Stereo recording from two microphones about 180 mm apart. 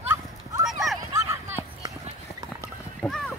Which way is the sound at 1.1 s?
15° right (ahead or behind).